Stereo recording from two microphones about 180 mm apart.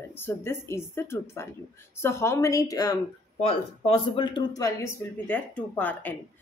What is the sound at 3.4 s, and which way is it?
Speech, 30° left (ahead or behind).